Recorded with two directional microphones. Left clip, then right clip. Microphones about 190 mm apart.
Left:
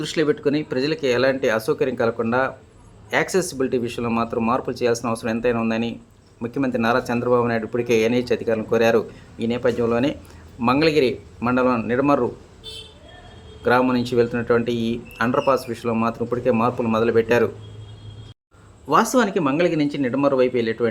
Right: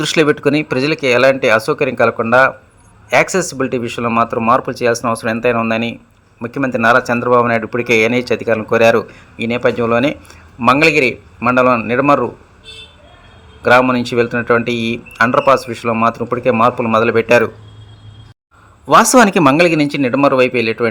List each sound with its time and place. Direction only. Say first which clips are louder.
0.0 s speech: right 8 dB; 35° right (ahead or behind)
13.6 s speech: right 8 dB; 20° right (ahead or behind)
18.9 s speech: right 10 dB; 40° right (ahead or behind)